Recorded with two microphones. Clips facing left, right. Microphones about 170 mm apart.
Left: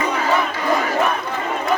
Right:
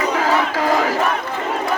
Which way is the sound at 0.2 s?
90° right.